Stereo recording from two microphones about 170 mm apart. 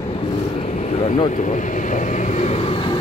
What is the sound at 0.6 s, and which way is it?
Speech, 40° left (ahead or behind).